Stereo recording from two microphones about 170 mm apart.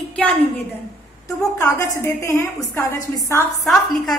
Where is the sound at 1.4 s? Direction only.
20° left (ahead or behind).